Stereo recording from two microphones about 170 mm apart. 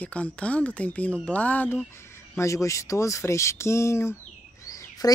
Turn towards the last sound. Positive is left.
turn(degrees=20)  # may be behind; listen again after turning